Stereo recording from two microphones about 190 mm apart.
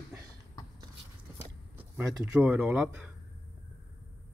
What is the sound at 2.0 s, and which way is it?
Speech, 5° right (ahead or behind).